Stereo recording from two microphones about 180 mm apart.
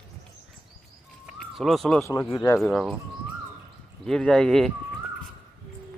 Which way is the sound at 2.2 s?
20° left (ahead or behind).